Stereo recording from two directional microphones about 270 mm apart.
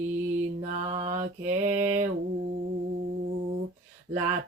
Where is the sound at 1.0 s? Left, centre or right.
Right.